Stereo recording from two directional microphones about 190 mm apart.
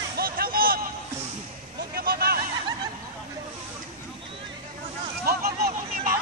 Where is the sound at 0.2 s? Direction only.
50° right (ahead or behind).